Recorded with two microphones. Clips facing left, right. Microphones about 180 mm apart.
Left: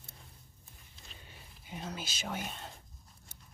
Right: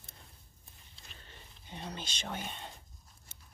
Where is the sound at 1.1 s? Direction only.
10° left (ahead or behind).